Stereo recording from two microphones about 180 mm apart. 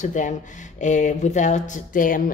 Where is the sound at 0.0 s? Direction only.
45° left (ahead or behind).